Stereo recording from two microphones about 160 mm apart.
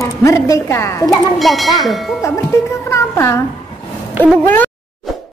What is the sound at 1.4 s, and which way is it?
Speech, centre (ahead or behind).